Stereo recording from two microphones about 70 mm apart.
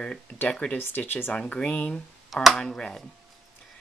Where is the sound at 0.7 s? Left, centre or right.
Left.